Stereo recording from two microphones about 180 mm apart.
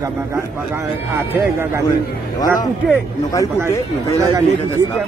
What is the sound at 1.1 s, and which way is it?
Speech, 15° right (ahead or behind).